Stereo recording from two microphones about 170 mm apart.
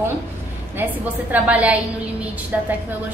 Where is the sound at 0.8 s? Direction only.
10° right (ahead or behind).